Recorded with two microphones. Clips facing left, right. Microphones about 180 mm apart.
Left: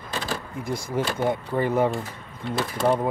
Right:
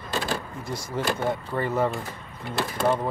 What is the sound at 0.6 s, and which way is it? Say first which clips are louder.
Speech: left 6 dB; 15° left (ahead or behind).